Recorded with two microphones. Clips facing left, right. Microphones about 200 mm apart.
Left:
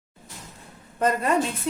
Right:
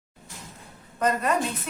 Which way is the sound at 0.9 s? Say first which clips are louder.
Left 1 dB; 30° left (ahead or behind).